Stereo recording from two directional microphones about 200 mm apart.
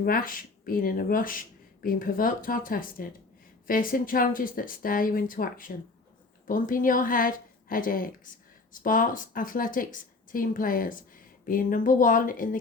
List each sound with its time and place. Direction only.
0.0 s a woman's voice: 45° left (ahead or behind)